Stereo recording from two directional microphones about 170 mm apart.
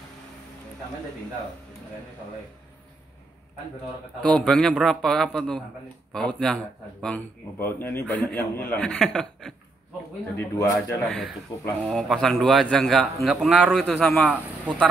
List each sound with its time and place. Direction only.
4.2 s a man's voice: 5° left (ahead or behind)
10.3 s speech: 15° left (ahead or behind)
11.8 s a man's voice: centre (ahead or behind)